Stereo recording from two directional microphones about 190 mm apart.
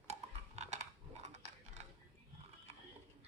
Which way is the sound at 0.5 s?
35° right (ahead or behind).